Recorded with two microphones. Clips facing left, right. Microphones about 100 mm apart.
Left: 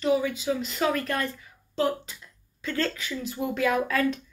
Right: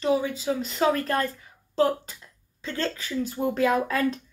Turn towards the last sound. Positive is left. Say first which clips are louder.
# right 1 dB
turn(degrees=-30)  # may be behind; listen again after turning